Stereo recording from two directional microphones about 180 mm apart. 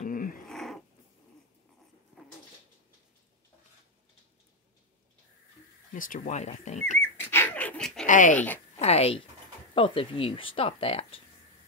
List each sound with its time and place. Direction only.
0.0 s cat: 50° left (ahead or behind)
0.5 s cat: centre (ahead or behind)
5.9 s speech: 45° left (ahead or behind)
7.0 s dog: 10° left (ahead or behind)
8.1 s speech: 45° left (ahead or behind)
8.7 s speech: 35° left (ahead or behind)